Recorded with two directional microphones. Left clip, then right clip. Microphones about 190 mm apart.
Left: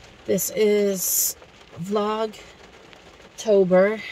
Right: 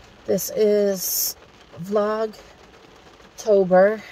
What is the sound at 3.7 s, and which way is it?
Speech, 30° left (ahead or behind).